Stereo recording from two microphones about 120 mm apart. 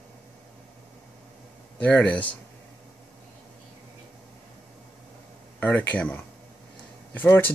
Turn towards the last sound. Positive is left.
turn(degrees=15)  # may be behind; listen again after turning